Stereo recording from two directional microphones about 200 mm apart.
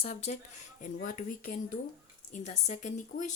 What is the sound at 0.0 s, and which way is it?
Speech, 35° left (ahead or behind).